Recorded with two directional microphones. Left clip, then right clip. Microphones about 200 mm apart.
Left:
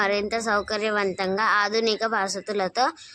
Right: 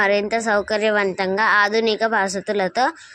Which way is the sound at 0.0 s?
15° right (ahead or behind).